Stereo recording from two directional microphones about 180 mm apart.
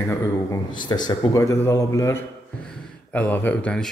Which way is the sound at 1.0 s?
15° left (ahead or behind).